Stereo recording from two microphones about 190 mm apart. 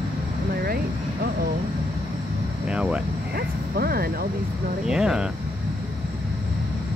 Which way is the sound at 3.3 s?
55° right (ahead or behind).